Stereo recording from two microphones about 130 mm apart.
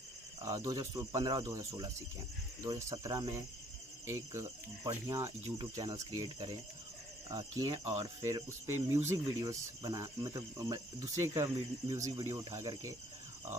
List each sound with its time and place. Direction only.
0.4 s speech: 25° right (ahead or behind)
7.2 s speech: 30° right (ahead or behind)